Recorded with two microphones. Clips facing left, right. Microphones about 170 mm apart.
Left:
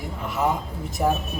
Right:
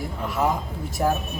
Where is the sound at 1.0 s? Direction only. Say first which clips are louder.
Even; 5° left (ahead or behind).